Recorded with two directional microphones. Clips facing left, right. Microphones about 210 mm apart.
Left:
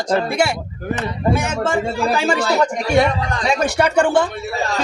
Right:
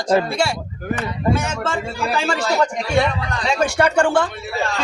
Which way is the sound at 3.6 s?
20° left (ahead or behind).